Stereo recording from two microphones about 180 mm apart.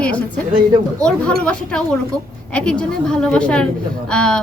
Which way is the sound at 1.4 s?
5° left (ahead or behind).